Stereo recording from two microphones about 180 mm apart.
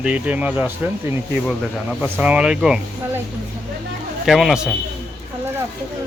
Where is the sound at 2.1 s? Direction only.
10° right (ahead or behind).